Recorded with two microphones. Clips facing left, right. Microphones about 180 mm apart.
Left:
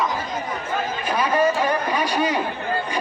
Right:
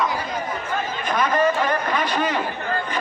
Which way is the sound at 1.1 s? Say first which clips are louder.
Even; 10° left (ahead or behind).